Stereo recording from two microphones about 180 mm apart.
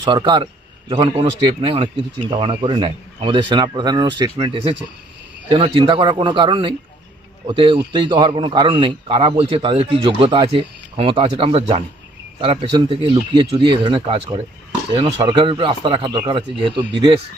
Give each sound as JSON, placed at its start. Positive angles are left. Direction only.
{"t": 0.0, "sound": "speech", "side_deg": -25}